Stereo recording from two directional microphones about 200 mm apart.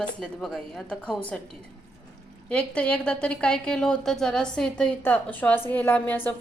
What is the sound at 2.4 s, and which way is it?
A woman's voice, 5° left (ahead or behind).